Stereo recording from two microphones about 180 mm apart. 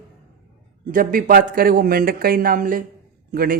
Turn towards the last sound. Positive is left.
turn(degrees=-55)  # may be behind; listen again after turning